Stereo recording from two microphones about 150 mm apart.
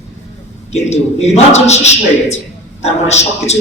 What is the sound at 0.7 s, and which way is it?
A man's voice, 45° left (ahead or behind).